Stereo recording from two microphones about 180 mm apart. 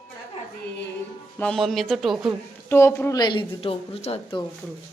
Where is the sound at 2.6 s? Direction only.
15° left (ahead or behind); by 4.4 s 30° left (ahead or behind).